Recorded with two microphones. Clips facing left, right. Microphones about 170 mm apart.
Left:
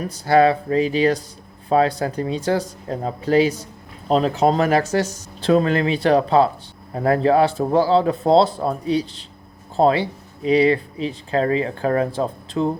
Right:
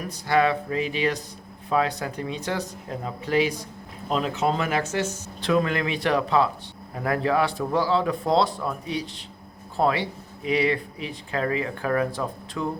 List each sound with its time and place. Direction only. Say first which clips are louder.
0.0 s speech: left 7 dB; 35° left (ahead or behind)